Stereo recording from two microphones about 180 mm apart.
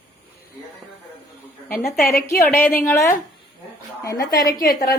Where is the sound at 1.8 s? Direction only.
55° left (ahead or behind).